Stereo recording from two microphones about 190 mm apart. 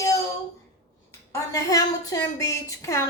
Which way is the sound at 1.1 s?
15° left (ahead or behind).